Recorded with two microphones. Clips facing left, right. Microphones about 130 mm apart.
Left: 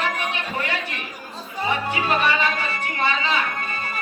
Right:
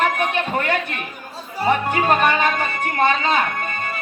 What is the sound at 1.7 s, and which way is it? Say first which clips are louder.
Speech: right 6 dB; 50° right (ahead or behind).